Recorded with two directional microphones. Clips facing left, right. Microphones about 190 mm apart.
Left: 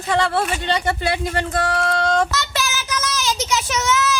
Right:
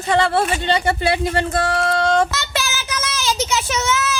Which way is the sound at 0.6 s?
5° right (ahead or behind).